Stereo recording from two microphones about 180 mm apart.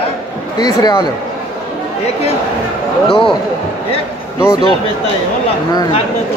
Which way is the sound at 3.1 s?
30° left (ahead or behind).